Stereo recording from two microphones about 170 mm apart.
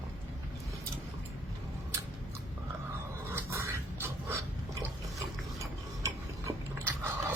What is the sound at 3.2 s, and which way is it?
Filing, 15° right (ahead or behind).